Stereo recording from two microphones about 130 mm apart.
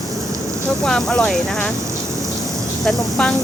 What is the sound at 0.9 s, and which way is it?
Speech, 5° left (ahead or behind).